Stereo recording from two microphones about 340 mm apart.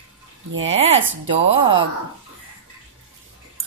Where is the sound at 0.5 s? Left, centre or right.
Right.